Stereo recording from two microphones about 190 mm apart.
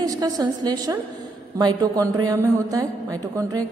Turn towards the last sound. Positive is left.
turn(degrees=-20)  # may be behind; listen again after turning